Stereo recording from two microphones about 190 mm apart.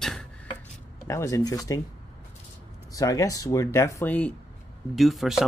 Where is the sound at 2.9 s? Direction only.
15° left (ahead or behind); by 5.4 s centre (ahead or behind).